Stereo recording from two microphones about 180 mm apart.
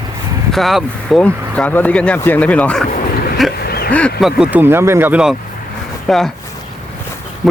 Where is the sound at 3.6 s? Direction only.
60° left (ahead or behind).